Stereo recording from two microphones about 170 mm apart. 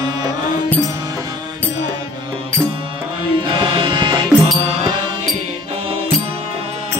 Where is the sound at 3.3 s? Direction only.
30° right (ahead or behind).